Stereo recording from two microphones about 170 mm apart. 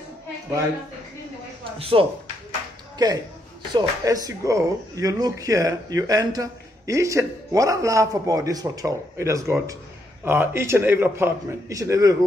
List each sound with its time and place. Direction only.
1.8 s speech: 35° right (ahead or behind)
3.0 s a man's voice: 25° right (ahead or behind)